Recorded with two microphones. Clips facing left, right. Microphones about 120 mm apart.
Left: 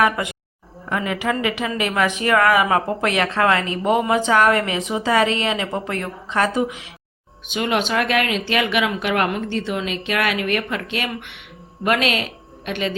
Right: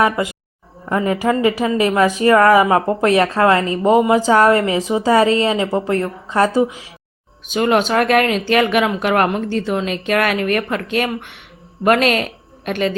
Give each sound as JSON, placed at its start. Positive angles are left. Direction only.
{"t": 0.0, "sound": "a woman's voice", "side_deg": -25}
{"t": 7.4, "sound": "a woman's voice", "side_deg": -40}